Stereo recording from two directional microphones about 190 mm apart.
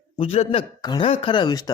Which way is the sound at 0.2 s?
30° left (ahead or behind).